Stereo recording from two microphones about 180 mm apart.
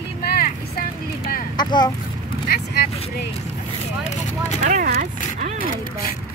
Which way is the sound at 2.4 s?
60° left (ahead or behind).